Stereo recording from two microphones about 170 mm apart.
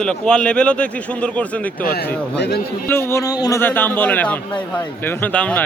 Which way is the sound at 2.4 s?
70° left (ahead or behind).